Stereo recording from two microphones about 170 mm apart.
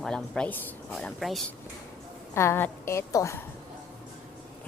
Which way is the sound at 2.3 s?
15° left (ahead or behind).